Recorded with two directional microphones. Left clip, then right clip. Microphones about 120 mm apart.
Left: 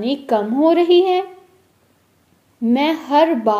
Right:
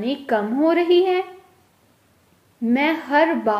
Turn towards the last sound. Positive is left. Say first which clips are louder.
# left 3 dB
turn(degrees=25)  # may be behind; listen again after turning